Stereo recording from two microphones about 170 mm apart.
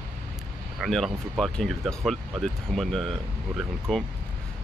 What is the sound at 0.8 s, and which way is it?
Speech, centre (ahead or behind).